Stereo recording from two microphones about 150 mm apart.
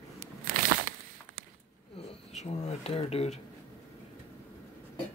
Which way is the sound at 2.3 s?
50° left (ahead or behind).